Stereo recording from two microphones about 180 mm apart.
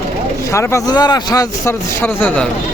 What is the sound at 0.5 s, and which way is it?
Speech, 20° left (ahead or behind).